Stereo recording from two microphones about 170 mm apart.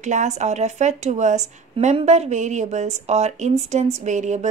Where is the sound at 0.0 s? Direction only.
45° right (ahead or behind).